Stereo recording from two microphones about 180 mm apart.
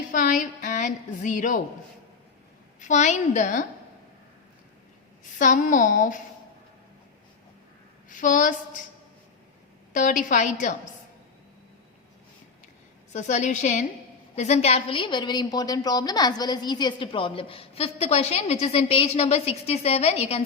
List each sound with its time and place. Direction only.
0.1 s a woman's voice: 50° left (ahead or behind)
2.8 s a woman's voice: 40° left (ahead or behind)
5.4 s a woman's voice: 45° left (ahead or behind)
8.1 s a woman's voice: 45° left (ahead or behind)
9.9 s a woman's voice: 45° left (ahead or behind)
13.1 s a woman's voice: 40° left (ahead or behind)